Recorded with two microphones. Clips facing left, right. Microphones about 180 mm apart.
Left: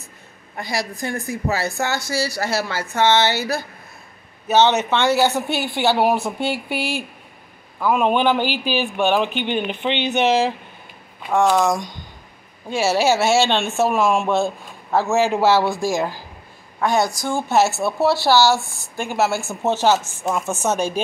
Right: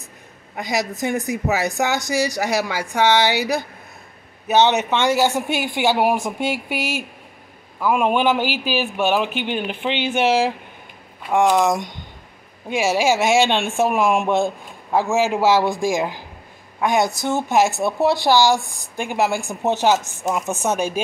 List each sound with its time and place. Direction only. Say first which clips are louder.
0.6 s speech: right 3 dB; 20° right (ahead or behind)
7.8 s speech: even; 10° right (ahead or behind)